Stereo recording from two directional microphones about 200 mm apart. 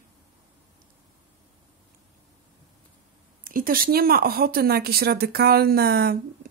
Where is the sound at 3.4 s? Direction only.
45° right (ahead or behind).